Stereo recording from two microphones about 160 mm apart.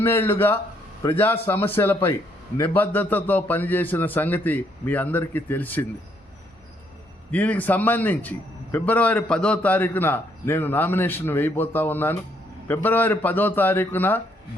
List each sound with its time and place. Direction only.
0.0 s a man's voice: 15° left (ahead or behind)
7.3 s a man's voice: 10° left (ahead or behind)